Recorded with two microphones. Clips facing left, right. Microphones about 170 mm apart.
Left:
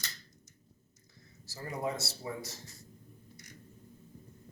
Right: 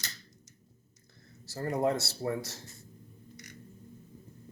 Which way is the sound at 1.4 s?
60° right (ahead or behind).